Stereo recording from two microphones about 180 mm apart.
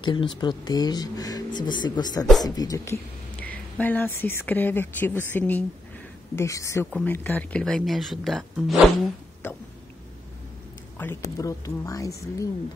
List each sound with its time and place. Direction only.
0.0 s speech: 25° left (ahead or behind); by 8.9 s centre (ahead or behind)
11.0 s speech: 10° left (ahead or behind)